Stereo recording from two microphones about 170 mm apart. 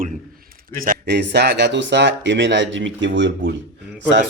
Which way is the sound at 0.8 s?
65° right (ahead or behind).